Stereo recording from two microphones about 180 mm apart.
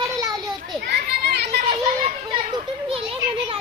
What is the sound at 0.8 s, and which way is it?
Children playing, 60° right (ahead or behind).